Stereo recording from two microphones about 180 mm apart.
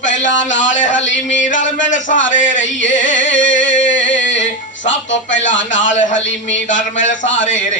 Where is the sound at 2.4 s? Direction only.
45° left (ahead or behind).